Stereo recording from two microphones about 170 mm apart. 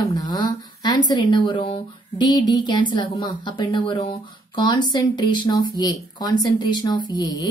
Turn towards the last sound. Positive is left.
turn(degrees=20)  # may be behind; listen again after turning